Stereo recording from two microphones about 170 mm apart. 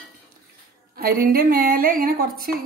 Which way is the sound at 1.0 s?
60° right (ahead or behind).